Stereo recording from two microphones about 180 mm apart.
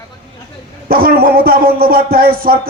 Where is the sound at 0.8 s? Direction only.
55° right (ahead or behind).